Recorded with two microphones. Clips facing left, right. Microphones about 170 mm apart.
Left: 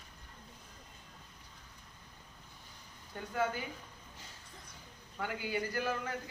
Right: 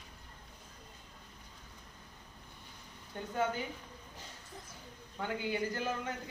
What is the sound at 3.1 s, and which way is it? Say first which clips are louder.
Speech: right 2 dB; 25° right (ahead or behind).